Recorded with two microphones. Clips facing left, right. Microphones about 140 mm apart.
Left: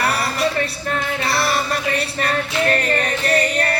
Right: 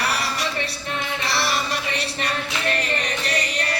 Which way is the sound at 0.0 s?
55° left (ahead or behind).